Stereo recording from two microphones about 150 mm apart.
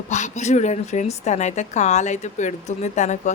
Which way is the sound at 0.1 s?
50° left (ahead or behind).